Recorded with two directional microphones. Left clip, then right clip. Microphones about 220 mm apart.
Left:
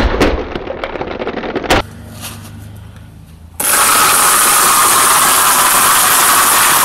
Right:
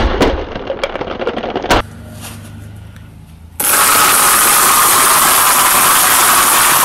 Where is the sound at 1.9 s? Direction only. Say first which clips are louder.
Left 2 dB; centre (ahead or behind).